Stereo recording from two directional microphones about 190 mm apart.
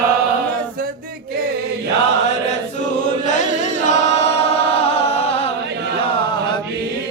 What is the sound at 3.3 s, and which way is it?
Music, 40° left (ahead or behind).